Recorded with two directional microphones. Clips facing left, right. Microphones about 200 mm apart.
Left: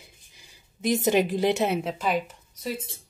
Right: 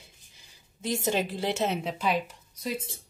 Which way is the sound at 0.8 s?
15° left (ahead or behind).